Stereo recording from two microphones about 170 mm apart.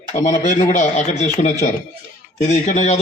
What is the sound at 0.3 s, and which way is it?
A man's voice, 50° left (ahead or behind).